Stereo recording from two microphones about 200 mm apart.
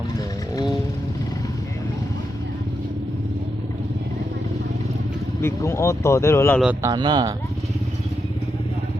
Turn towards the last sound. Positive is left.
turn(degrees=-25)  # may be behind; listen again after turning